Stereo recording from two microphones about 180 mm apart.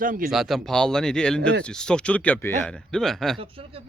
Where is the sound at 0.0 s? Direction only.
50° right (ahead or behind).